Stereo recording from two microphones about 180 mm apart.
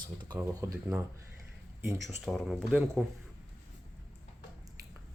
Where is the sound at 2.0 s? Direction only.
Centre (ahead or behind).